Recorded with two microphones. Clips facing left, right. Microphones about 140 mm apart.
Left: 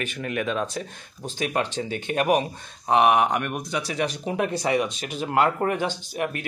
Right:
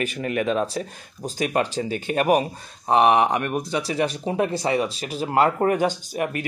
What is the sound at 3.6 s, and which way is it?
Speech, 30° right (ahead or behind).